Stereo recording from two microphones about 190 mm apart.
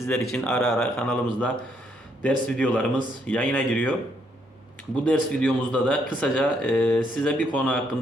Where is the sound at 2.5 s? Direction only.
5° left (ahead or behind).